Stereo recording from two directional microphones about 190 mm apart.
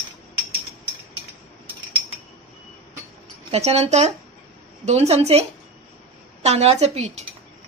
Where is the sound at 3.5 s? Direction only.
35° right (ahead or behind).